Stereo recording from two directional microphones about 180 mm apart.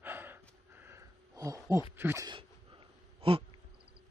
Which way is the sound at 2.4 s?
30° right (ahead or behind).